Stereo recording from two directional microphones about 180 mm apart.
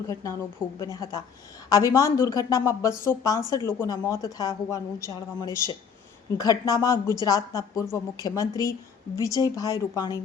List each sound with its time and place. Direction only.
0.1 s a woman's voice: 15° left (ahead or behind)